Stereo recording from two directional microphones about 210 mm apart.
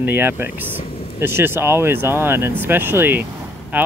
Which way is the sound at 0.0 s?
10° right (ahead or behind).